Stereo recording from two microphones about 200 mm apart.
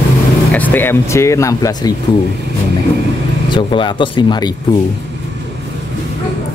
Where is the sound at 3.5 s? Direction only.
25° left (ahead or behind).